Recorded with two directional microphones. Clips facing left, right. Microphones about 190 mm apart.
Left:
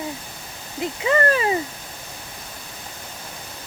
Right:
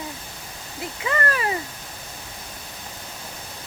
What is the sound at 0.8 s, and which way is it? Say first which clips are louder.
Speech: left 6 dB; 25° left (ahead or behind).